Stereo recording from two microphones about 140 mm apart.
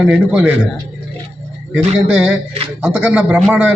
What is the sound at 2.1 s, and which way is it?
A man's voice, 10° right (ahead or behind).